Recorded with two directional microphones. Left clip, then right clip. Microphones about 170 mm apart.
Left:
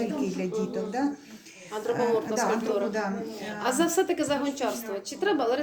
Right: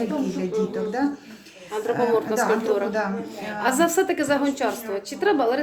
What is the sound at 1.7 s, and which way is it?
A woman's voice, 15° right (ahead or behind).